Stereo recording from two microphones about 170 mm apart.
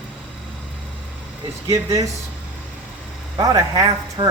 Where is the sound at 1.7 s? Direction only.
20° right (ahead or behind).